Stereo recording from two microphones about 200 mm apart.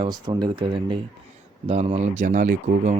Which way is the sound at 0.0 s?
20° right (ahead or behind).